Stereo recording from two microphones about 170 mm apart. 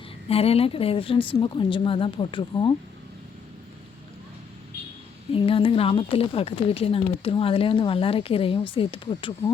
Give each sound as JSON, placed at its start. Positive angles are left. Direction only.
{"t": 0.3, "sound": "speech", "side_deg": 35}
{"t": 5.3, "sound": "speech", "side_deg": 30}